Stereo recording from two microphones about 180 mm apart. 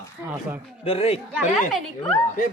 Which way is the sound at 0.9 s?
35° left (ahead or behind).